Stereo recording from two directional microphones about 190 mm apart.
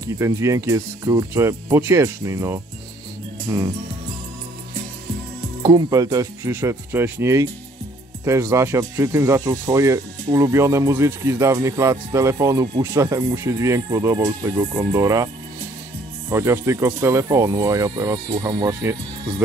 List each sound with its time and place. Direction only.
0.2 s speech: 15° right (ahead or behind)
5.6 s speech: 20° right (ahead or behind)
16.3 s speech: 15° right (ahead or behind)